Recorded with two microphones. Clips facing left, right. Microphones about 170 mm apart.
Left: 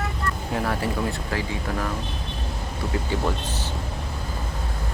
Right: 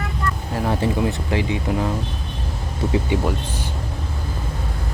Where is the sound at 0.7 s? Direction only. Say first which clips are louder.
Right 8 dB; 20° right (ahead or behind).